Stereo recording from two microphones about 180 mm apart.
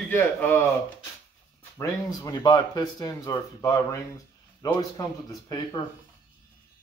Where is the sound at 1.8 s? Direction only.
20° left (ahead or behind).